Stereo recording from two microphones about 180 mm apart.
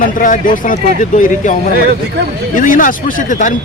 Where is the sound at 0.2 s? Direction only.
45° left (ahead or behind).